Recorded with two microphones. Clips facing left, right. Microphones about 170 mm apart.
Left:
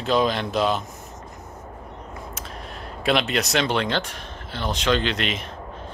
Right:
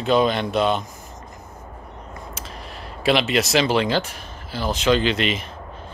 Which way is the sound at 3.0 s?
Centre (ahead or behind).